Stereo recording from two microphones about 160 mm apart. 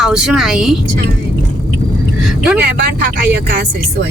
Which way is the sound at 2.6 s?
90° right.